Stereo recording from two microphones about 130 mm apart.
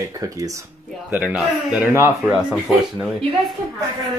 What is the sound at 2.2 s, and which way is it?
Speech, 5° right (ahead or behind).